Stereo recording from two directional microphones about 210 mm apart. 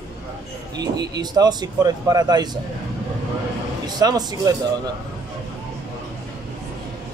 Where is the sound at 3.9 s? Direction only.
20° right (ahead or behind).